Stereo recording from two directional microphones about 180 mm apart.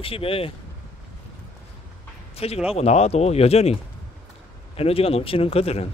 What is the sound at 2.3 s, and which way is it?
Speech, 35° left (ahead or behind).